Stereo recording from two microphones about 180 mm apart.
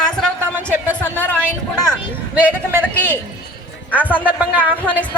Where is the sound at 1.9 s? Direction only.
10° right (ahead or behind).